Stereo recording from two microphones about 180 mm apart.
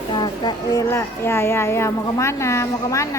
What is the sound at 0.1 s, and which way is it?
Speech, 25° left (ahead or behind).